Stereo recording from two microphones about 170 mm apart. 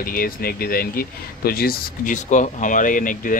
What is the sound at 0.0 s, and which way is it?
Speech, 60° left (ahead or behind).